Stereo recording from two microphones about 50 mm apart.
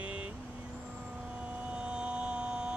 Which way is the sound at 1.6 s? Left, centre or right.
Centre.